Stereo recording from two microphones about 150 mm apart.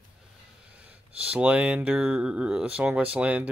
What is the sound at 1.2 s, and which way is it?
Speech, 10° right (ahead or behind).